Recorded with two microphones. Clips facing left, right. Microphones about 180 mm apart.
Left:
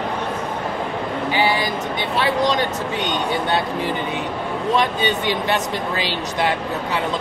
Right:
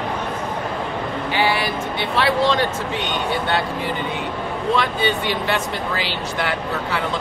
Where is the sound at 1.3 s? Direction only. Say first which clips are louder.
Even; 15° left (ahead or behind).